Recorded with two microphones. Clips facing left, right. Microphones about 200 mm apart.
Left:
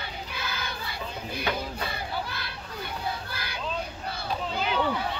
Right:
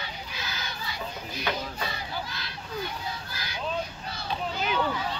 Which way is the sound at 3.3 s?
55° left (ahead or behind).